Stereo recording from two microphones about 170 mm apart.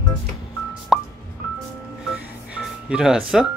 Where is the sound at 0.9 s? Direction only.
Centre (ahead or behind).